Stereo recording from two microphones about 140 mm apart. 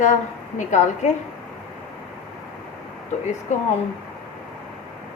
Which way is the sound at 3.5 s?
60° left (ahead or behind).